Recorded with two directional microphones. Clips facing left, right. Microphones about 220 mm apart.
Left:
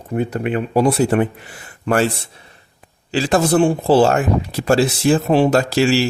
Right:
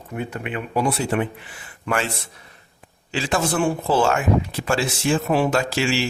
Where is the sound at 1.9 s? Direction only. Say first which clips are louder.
Left 7 dB; 30° left (ahead or behind).